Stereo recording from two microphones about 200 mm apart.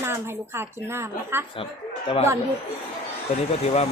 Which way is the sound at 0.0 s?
10° right (ahead or behind).